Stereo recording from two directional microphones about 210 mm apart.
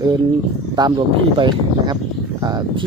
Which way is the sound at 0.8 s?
20° right (ahead or behind).